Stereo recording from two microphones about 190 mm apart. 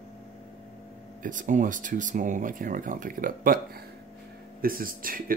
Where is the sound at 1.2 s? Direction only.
40° right (ahead or behind).